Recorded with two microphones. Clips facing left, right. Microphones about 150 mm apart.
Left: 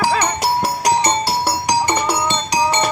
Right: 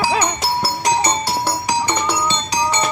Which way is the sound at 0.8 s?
40° left (ahead or behind).